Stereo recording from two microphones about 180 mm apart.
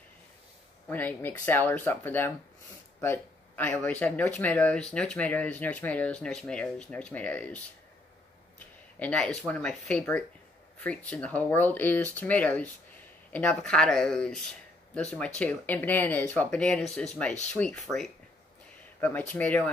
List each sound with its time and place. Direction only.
0.8 s speech: 10° left (ahead or behind)
9.0 s speech: 5° left (ahead or behind)